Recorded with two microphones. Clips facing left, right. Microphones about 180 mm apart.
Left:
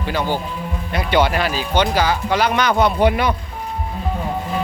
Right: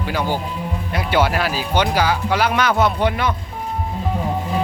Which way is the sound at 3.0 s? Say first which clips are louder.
Left 3 dB; 10° left (ahead or behind).